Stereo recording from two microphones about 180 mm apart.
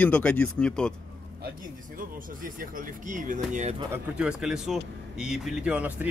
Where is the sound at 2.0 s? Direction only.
50° right (ahead or behind).